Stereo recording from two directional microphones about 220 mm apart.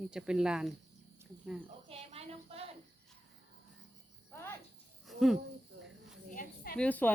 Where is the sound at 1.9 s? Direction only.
25° right (ahead or behind).